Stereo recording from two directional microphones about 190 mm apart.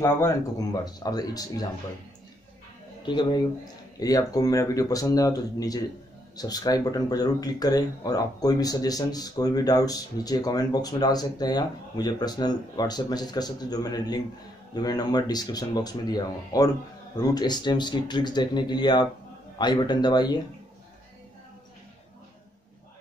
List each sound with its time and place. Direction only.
0.0 s speech: 15° left (ahead or behind)
3.0 s speech: 25° left (ahead or behind)